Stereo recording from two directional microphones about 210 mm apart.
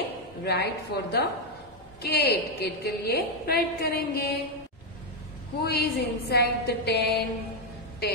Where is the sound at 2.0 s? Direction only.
50° left (ahead or behind).